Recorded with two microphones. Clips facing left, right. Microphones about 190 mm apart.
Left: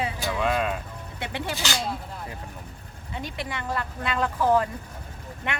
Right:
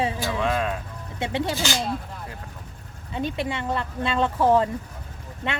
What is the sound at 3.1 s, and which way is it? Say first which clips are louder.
Speech: right 6 dB; 20° right (ahead or behind).